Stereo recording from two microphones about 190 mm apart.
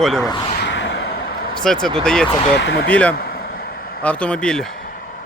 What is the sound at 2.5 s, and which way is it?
Speech, 65° left (ahead or behind).